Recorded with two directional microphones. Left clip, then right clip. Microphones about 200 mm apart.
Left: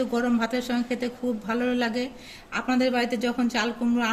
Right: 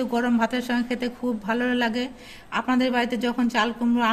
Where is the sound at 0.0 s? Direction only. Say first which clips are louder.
Right 2 dB; 45° right (ahead or behind).